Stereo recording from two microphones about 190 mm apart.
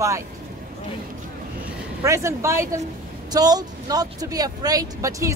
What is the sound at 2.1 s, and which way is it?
Speech, 15° right (ahead or behind).